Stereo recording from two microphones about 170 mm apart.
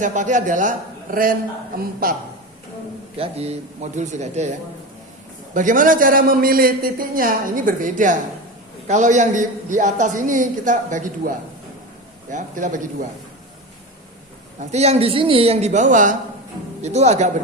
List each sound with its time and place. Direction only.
0.0 s a man's voice: 45° right (ahead or behind)
3.2 s a man's voice: 35° right (ahead or behind)
5.5 s a man's voice: 50° right (ahead or behind)
14.6 s speech: 40° right (ahead or behind)